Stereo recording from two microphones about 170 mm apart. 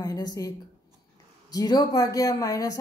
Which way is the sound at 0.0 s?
20° left (ahead or behind).